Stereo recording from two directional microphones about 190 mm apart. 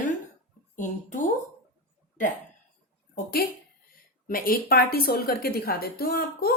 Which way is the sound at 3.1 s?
50° left (ahead or behind).